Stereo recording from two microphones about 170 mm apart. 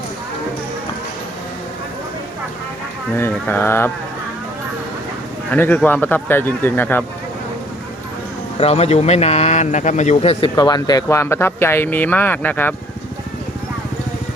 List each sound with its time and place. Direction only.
3.2 s speech: 10° left (ahead or behind)
5.5 s speech: 10° left (ahead or behind)
8.5 s a man's voice: 35° left (ahead or behind)
10.5 s speech: 20° left (ahead or behind)